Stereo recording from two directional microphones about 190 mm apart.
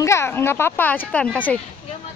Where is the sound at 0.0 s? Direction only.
15° left (ahead or behind).